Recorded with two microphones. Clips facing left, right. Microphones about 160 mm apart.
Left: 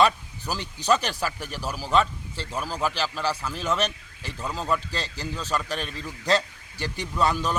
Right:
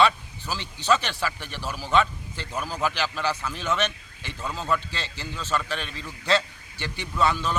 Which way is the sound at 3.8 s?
35° left (ahead or behind).